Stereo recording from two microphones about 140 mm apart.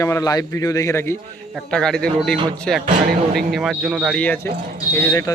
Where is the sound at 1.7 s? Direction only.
5° left (ahead or behind).